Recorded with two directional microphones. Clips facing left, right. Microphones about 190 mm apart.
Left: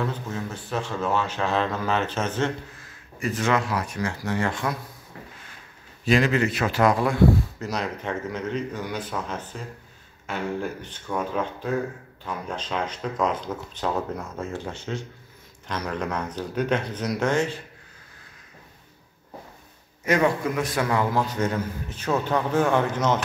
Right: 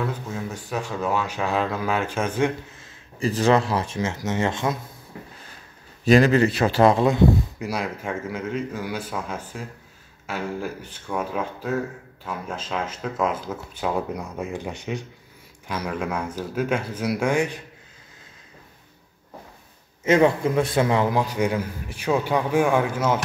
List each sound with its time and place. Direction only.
0.0 s speech: 10° right (ahead or behind)
2.8 s speech: 30° right (ahead or behind)
6.0 s speech: 40° right (ahead or behind); by 17.6 s 10° right (ahead or behind)
20.1 s speech: 30° right (ahead or behind); by 23.2 s 10° right (ahead or behind)